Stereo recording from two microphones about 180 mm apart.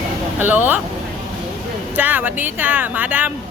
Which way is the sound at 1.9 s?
10° right (ahead or behind).